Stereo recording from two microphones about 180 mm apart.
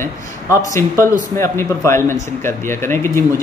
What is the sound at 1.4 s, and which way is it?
Speech, 15° left (ahead or behind).